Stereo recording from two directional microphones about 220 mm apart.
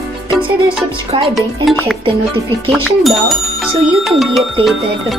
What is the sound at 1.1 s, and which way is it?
Speech, 25° right (ahead or behind).